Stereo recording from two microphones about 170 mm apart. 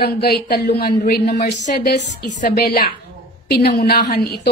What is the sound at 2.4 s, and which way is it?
Speech, 60° left (ahead or behind).